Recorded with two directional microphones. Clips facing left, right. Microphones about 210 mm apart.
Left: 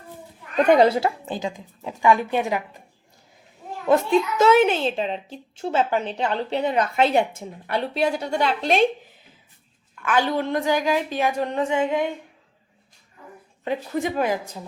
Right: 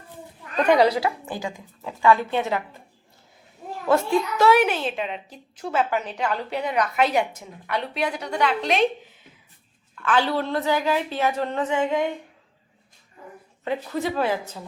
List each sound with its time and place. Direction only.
0.9 s a woman's voice: 25° left (ahead or behind)
3.8 s a woman's voice: 20° left (ahead or behind)
10.0 s a woman's voice: 15° left (ahead or behind)
13.7 s a woman's voice: 15° left (ahead or behind)